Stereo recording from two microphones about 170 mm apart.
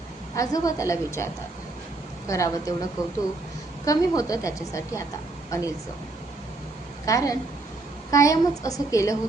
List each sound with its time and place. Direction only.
0.3 s a woman's voice: 20° left (ahead or behind)
7.0 s a woman's voice: 20° left (ahead or behind)